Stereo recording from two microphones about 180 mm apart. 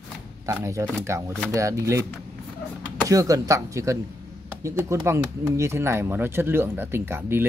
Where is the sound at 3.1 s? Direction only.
20° right (ahead or behind).